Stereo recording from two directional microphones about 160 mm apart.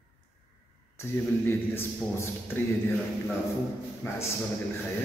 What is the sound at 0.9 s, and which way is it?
A man's voice, 15° left (ahead or behind).